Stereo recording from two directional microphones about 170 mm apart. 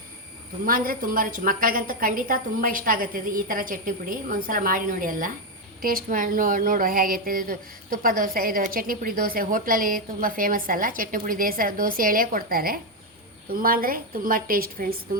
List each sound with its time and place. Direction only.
0.6 s speech: 55° right (ahead or behind)